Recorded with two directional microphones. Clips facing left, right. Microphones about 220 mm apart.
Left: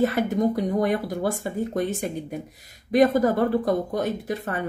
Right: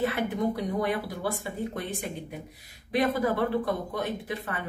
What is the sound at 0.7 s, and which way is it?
Speech, 45° left (ahead or behind).